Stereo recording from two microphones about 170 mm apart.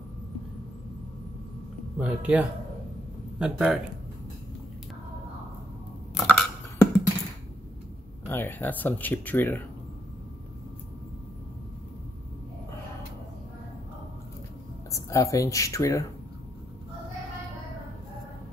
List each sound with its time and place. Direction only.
2.0 s speech: 10° right (ahead or behind)
6.1 s a sound: 5° left (ahead or behind)
8.3 s speech: 10° left (ahead or behind)
14.9 s speech: 20° left (ahead or behind)